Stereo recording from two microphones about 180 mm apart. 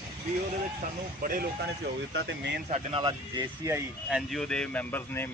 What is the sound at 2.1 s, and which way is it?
Speech, 75° right (ahead or behind).